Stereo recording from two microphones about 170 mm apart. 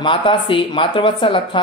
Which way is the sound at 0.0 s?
30° left (ahead or behind).